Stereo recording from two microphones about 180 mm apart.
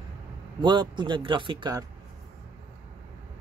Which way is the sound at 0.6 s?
25° right (ahead or behind).